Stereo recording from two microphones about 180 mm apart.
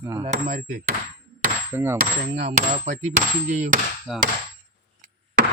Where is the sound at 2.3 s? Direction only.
35° right (ahead or behind).